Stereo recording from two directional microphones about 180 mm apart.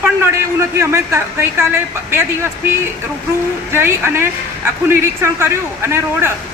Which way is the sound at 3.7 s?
15° right (ahead or behind).